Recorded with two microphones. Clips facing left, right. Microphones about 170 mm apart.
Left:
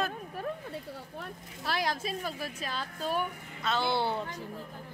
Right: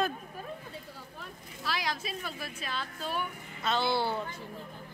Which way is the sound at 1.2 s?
55° left (ahead or behind).